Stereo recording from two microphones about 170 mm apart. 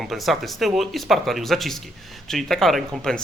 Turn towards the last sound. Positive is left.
turn(degrees=0)  # may be behind; listen again after turning